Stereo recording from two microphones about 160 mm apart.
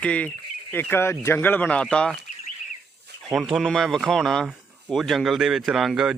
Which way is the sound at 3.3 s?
Centre (ahead or behind).